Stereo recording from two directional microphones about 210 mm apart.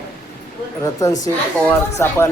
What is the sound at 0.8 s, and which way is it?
Speech, 15° left (ahead or behind).